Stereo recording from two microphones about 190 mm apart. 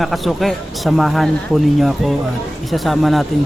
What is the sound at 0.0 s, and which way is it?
Speech, centre (ahead or behind).